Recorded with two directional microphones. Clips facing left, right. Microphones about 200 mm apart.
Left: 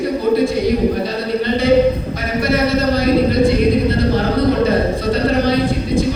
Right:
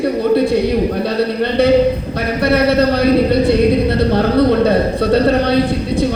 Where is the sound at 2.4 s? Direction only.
65° right (ahead or behind).